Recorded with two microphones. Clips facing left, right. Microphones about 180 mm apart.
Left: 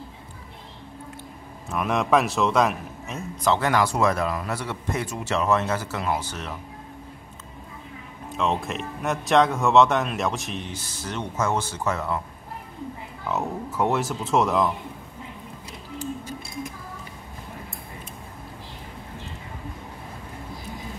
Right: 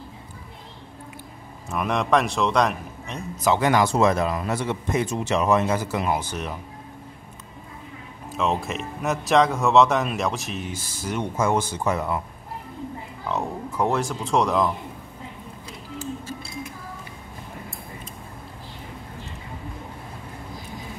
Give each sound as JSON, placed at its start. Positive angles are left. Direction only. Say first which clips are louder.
{"t": 1.7, "sound": "speech", "louder": "even", "side_deg": 0}
{"t": 3.4, "sound": "speech", "louder": "right 2 dB", "side_deg": -15}
{"t": 8.4, "sound": "speech", "louder": "right 1 dB", "side_deg": 0}
{"t": 13.3, "sound": "speech", "louder": "even", "side_deg": 5}